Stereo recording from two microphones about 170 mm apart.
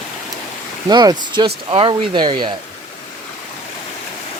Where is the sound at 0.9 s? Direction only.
25° right (ahead or behind).